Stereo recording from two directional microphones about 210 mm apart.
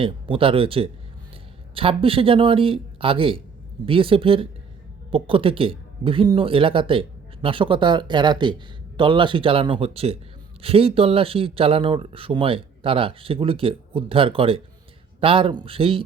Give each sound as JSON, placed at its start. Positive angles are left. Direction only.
{"t": 0.0, "sound": "speech", "side_deg": -25}